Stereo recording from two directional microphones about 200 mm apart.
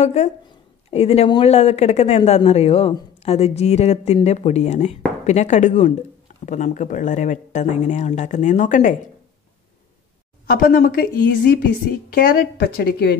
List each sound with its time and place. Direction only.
0.0 s speech: 35° left (ahead or behind)
10.4 s a woman's voice: 45° left (ahead or behind)